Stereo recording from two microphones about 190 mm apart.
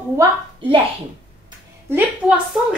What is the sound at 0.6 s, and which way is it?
Speech, 25° right (ahead or behind).